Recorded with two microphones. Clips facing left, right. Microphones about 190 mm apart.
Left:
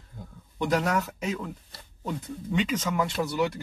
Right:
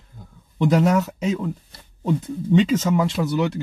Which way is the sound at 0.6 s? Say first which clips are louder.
Right 7 dB; 20° right (ahead or behind).